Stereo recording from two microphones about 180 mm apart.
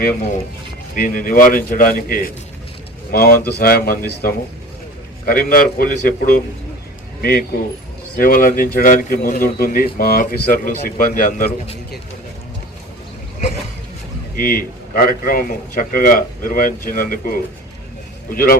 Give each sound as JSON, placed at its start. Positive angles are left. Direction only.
{"t": 0.9, "sound": "speech", "side_deg": 50}
{"t": 14.3, "sound": "speech", "side_deg": 55}